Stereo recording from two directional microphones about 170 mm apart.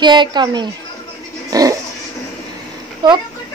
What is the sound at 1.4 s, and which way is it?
Dog, 20° right (ahead or behind).